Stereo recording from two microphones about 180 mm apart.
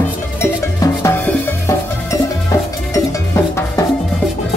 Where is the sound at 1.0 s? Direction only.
15° left (ahead or behind).